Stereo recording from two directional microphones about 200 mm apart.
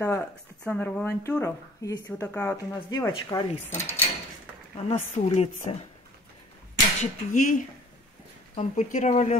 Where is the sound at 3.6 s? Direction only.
10° left (ahead or behind).